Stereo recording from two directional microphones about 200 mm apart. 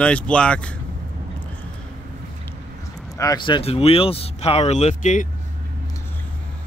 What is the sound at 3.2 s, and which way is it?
Speech, 20° left (ahead or behind).